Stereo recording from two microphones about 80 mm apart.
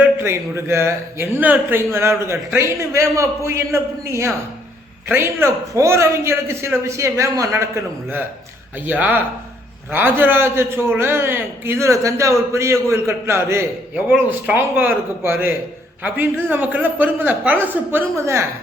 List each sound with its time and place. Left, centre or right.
0.0 s speech: right
1.9 s a man's voice: right
8.9 s a man's voice: right
14.3 s speech: right
18.2 s a man's voice: right